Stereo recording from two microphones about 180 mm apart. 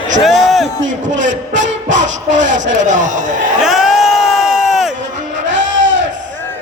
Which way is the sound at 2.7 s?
45° right (ahead or behind).